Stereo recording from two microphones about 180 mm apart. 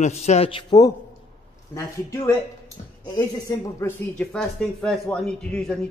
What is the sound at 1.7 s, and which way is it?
Speech, 15° left (ahead or behind).